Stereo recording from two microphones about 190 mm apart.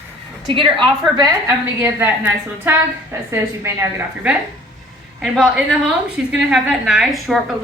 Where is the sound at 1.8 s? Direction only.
10° right (ahead or behind).